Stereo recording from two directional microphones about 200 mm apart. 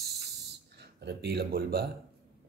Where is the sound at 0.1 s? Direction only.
55° right (ahead or behind).